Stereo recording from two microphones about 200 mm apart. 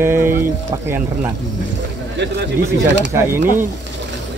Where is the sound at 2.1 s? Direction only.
60° right (ahead or behind).